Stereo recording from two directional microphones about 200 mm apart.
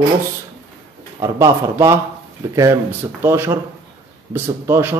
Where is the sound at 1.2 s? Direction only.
15° right (ahead or behind).